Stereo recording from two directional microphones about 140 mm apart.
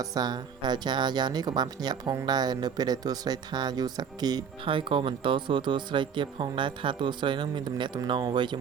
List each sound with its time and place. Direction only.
0.0 s speech: 30° right (ahead or behind)